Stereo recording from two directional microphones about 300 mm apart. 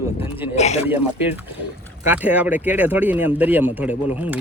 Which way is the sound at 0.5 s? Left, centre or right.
Left.